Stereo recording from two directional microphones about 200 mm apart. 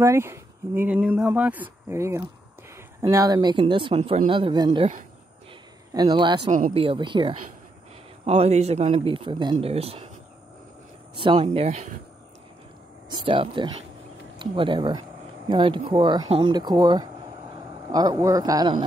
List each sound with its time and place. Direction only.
0.0 s a man's voice: 15° right (ahead or behind)
5.9 s a man's voice: 20° right (ahead or behind)
11.1 s a man's voice: 25° right (ahead or behind)
13.1 s a man's voice: 25° right (ahead or behind)